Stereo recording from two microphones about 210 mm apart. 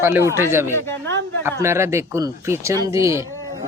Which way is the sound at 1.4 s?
10° right (ahead or behind).